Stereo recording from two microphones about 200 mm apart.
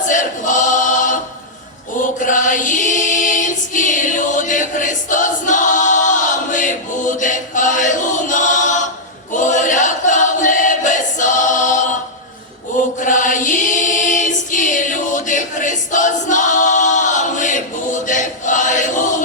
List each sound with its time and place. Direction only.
0.0 s choir: 40° left (ahead or behind)
13.0 s choir: 40° left (ahead or behind)